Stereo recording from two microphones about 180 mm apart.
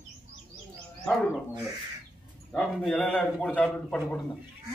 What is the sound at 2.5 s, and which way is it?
Speech, centre (ahead or behind).